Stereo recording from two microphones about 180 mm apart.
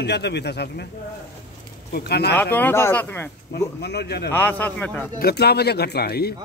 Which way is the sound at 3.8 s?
65° left (ahead or behind).